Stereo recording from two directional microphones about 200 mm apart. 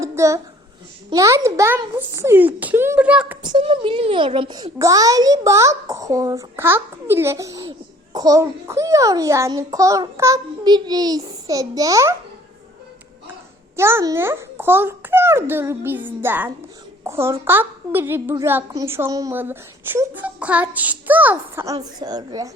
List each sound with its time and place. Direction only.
0.0 s a sound: 15° right (ahead or behind)
1.1 s a woman's voice: 15° right (ahead or behind)
3.4 s a woman's voice: 25° right (ahead or behind)
13.7 s a woman's voice: 10° right (ahead or behind)